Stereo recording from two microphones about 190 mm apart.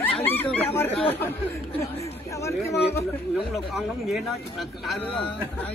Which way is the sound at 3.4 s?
Centre (ahead or behind).